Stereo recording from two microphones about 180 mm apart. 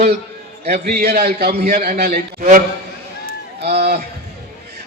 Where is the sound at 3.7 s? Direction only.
55° right (ahead or behind).